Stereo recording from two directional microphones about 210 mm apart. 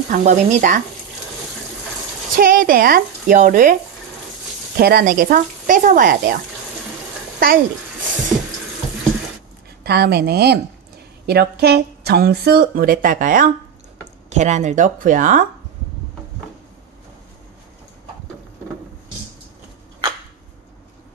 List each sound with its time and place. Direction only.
0.1 s speech: 35° right (ahead or behind)
2.3 s speech: 40° right (ahead or behind)
4.7 s speech: 45° right (ahead or behind)
7.3 s speech: 45° right (ahead or behind)
9.8 s speech: 50° right (ahead or behind)